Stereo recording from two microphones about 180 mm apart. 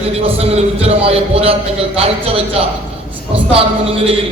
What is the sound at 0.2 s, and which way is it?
Speech, 35° right (ahead or behind).